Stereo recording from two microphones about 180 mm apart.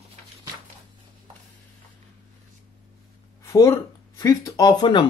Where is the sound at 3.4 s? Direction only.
20° left (ahead or behind).